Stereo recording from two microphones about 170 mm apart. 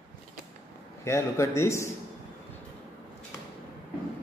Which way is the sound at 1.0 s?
15° left (ahead or behind).